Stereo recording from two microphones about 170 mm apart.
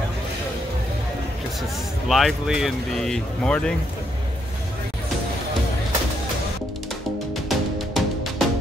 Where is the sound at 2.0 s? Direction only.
Centre (ahead or behind).